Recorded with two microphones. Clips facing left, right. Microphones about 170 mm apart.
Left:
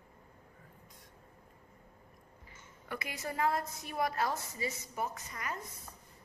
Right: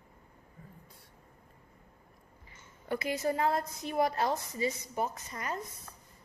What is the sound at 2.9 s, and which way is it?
A woman's voice, 25° right (ahead or behind).